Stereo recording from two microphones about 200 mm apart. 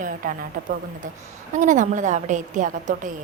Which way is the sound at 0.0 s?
45° right (ahead or behind).